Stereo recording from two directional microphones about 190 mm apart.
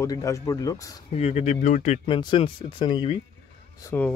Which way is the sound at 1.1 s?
35° left (ahead or behind).